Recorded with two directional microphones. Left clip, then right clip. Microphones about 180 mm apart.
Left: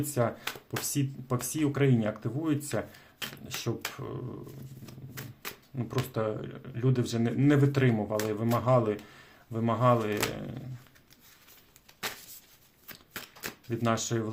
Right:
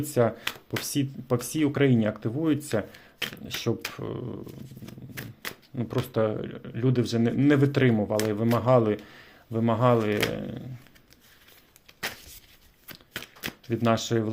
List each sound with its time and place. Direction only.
0.0 s speech: 30° right (ahead or behind)
4.9 s shuffling cards: 35° right (ahead or behind)
5.5 s a sound: 25° right (ahead or behind)
6.1 s speech: 30° right (ahead or behind)
13.1 s shuffling cards: 20° right (ahead or behind)